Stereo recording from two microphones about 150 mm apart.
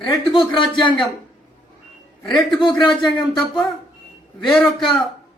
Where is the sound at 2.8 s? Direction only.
35° left (ahead or behind).